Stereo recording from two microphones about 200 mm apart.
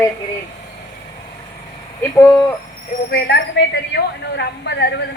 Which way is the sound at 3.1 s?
50° left (ahead or behind).